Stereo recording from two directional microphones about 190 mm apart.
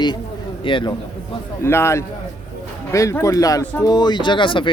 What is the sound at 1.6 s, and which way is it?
A man's voice, 15° left (ahead or behind).